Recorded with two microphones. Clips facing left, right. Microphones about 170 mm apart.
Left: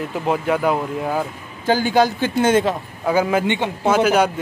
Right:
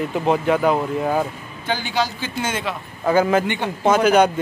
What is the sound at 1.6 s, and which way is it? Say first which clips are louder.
A man's voice: left 7 dB; 45° left (ahead or behind).